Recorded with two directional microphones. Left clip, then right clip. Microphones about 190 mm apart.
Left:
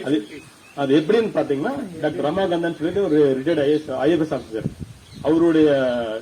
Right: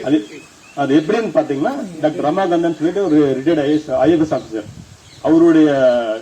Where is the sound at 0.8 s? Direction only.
20° left (ahead or behind).